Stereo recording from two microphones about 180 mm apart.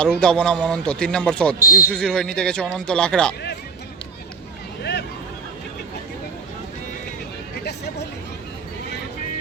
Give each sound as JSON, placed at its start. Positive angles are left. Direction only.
{"t": 0.0, "sound": "a man's voice", "side_deg": 5}
{"t": 1.5, "sound": "speech", "side_deg": 50}
{"t": 1.9, "sound": "a man's voice", "side_deg": 5}
{"t": 4.8, "sound": "vehicle", "side_deg": 70}
{"t": 7.6, "sound": "hubbub", "side_deg": 65}